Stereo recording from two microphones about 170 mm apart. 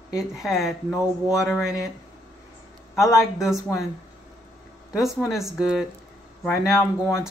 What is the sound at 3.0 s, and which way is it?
Speech, centre (ahead or behind).